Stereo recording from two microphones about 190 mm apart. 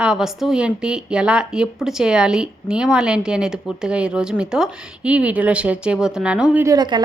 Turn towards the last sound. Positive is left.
turn(degrees=-20)  # may be behind; listen again after turning